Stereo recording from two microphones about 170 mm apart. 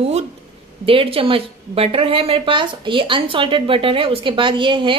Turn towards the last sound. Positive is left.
turn(degrees=-30)  # may be behind; listen again after turning